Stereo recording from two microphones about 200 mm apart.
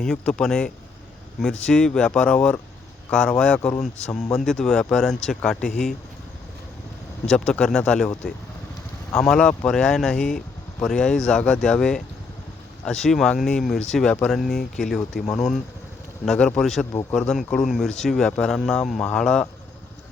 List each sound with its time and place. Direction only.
0.0 s speech: 5° left (ahead or behind)
7.3 s speech: 5° left (ahead or behind)
9.3 s speech: 5° left (ahead or behind)
16.9 s speech: 15° left (ahead or behind)
17.2 s speech: centre (ahead or behind)